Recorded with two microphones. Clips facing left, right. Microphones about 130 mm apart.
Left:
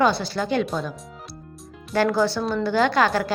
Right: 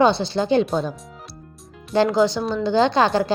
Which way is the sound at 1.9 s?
20° right (ahead or behind).